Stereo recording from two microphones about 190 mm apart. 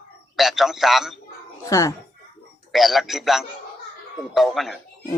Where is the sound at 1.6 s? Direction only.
15° left (ahead or behind).